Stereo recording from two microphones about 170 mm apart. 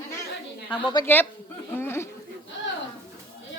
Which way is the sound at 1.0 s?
25° left (ahead or behind).